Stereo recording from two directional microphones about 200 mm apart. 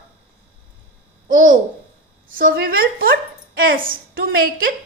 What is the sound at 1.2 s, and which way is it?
A child's voice, 40° right (ahead or behind).